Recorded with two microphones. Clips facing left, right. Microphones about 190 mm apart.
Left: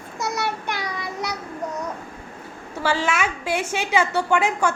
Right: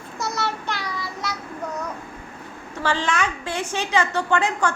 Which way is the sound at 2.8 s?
5° left (ahead or behind).